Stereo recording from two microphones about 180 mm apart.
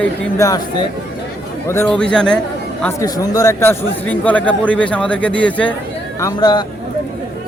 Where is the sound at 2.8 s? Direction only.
20° left (ahead or behind).